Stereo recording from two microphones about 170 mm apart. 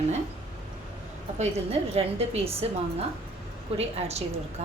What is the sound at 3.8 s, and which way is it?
Speech, 40° right (ahead or behind).